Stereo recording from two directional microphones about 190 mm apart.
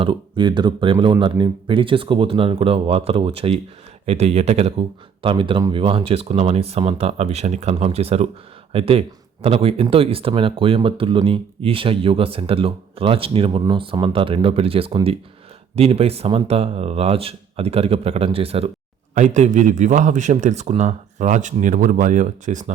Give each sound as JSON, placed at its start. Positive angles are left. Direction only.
{"t": 0.0, "sound": "speech", "side_deg": -25}